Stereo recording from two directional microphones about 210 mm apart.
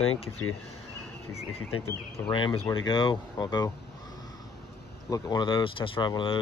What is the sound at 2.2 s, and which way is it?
Speech, 20° left (ahead or behind).